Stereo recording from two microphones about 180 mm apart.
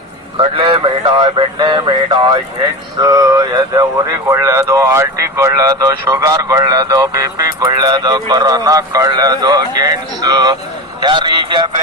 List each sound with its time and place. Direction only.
0.3 s speech: 30° right (ahead or behind)